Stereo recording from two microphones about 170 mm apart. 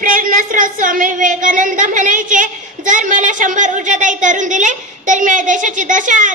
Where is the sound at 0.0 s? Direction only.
55° right (ahead or behind).